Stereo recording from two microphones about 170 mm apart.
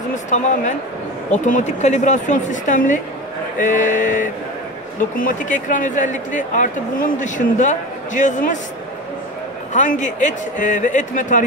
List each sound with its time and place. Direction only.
0.3 s speech: 45° left (ahead or behind)
9.7 s speech: 45° left (ahead or behind)